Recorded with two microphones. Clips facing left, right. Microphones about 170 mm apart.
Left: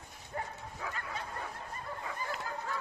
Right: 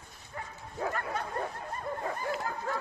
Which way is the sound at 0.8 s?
55° right (ahead or behind).